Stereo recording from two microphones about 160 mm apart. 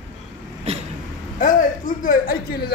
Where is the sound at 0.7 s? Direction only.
40° right (ahead or behind).